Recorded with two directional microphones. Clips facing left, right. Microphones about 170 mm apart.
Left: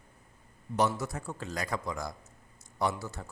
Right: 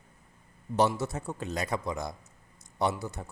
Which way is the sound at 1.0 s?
25° right (ahead or behind).